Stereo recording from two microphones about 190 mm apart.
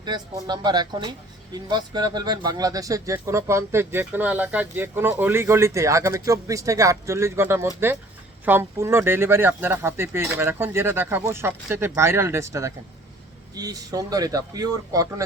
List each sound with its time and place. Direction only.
0.0 s speech: 20° right (ahead or behind)